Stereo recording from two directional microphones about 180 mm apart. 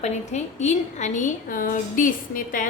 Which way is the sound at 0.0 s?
40° left (ahead or behind).